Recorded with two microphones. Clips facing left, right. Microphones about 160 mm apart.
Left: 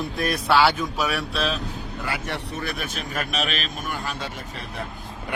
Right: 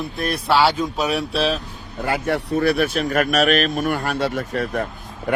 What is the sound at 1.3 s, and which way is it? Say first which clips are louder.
Speech: right 5 dB; 35° right (ahead or behind).